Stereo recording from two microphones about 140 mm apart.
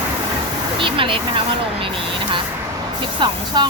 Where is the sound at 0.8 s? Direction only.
40° right (ahead or behind).